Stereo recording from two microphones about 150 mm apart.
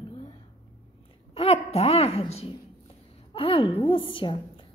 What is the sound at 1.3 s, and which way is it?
A woman's voice, 40° left (ahead or behind).